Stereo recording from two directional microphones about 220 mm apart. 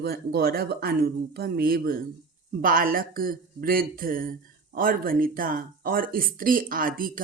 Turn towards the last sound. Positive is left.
turn(degrees=-40)  # may be behind; listen again after turning